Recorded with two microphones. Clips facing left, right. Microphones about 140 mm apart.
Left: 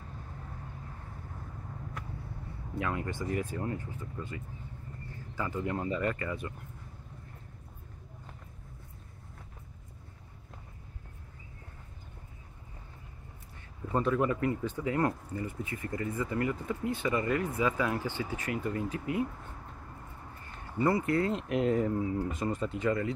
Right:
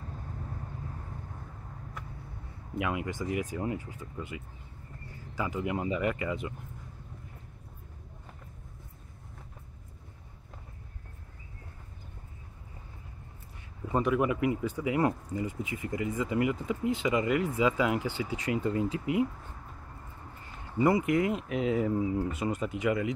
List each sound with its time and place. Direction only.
2.8 s speech: 15° right (ahead or behind)
13.9 s speech: 15° right (ahead or behind)
20.7 s speech: 15° right (ahead or behind)
21.4 s speech: centre (ahead or behind)